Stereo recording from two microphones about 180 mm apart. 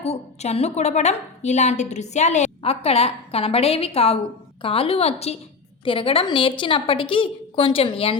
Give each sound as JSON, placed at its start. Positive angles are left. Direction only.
{"t": 0.0, "sound": "a woman's voice", "side_deg": 35}